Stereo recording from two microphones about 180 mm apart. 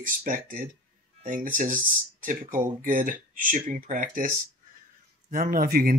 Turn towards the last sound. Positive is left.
turn(degrees=-55)  # may be behind; listen again after turning